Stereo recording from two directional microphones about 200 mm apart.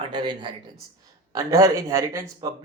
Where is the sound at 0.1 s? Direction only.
20° right (ahead or behind).